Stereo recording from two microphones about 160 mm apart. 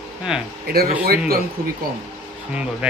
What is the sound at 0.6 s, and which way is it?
Speech, 75° right (ahead or behind).